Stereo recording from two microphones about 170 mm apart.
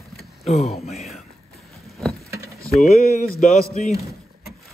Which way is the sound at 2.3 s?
20° right (ahead or behind).